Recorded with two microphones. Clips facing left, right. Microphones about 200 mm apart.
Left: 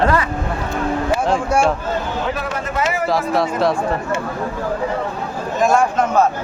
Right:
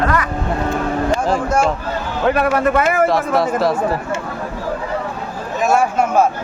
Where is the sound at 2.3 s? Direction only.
60° right (ahead or behind).